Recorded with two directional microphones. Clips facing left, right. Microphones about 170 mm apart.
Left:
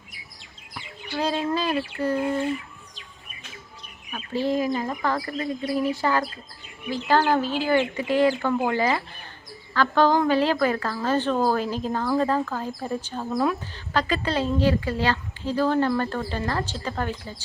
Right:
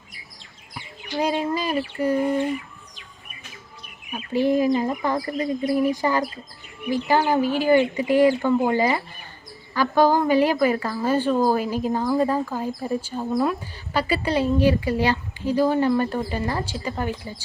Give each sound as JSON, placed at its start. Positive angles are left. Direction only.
{"t": 0.7, "sound": "bird", "side_deg": -15}
{"t": 4.1, "sound": "speech", "side_deg": -15}